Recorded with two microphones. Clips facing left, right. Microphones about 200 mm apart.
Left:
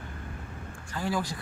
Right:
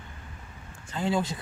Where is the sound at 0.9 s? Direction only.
25° right (ahead or behind).